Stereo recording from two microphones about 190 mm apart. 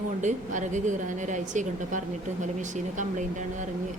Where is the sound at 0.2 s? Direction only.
40° right (ahead or behind).